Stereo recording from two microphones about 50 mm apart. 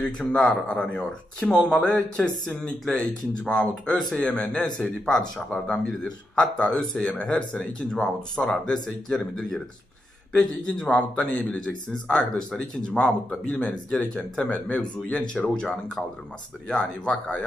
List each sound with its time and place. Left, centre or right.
0.0 s speech: left
2.8 s speech: centre; by 4.5 s left
5.0 s speech: centre
13.9 s speech: centre
17.0 s speech: left